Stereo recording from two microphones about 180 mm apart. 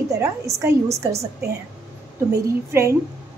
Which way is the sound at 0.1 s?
15° right (ahead or behind).